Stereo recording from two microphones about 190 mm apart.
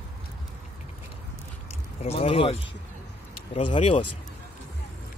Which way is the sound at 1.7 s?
35° left (ahead or behind).